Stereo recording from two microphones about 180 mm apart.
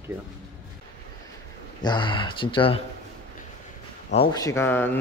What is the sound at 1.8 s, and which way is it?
Speech, 25° left (ahead or behind).